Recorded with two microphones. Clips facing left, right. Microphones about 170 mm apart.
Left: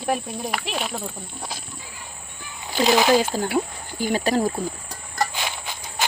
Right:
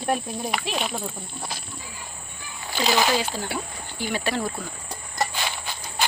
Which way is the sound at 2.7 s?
20° left (ahead or behind).